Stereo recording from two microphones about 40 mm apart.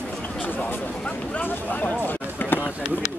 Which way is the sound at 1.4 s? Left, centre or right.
Left.